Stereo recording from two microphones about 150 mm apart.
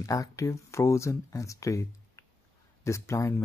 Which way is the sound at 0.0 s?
20° left (ahead or behind).